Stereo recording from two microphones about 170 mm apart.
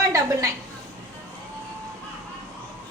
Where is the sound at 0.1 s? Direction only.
20° right (ahead or behind).